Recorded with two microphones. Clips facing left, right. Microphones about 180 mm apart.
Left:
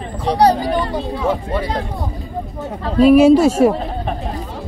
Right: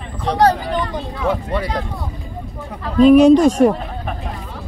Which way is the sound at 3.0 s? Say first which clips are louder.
Even; 5° left (ahead or behind).